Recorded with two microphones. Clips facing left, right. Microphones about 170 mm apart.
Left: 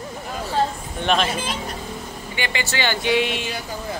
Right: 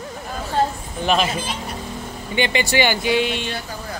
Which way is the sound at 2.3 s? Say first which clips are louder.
Right 7 dB; 20° right (ahead or behind).